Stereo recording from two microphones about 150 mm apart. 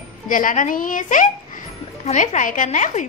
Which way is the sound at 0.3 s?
60° left (ahead or behind).